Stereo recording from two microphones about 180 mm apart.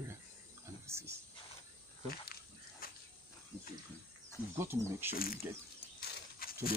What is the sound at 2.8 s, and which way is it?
Dog, 55° left (ahead or behind).